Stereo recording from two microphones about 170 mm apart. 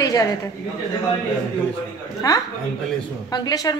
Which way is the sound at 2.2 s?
20° left (ahead or behind).